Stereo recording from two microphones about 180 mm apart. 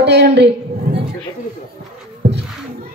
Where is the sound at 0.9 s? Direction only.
55° right (ahead or behind).